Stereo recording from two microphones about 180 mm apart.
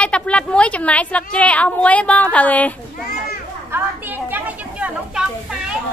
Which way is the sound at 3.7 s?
10° right (ahead or behind).